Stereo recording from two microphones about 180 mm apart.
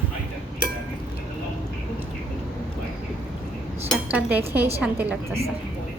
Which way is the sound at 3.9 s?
10° right (ahead or behind).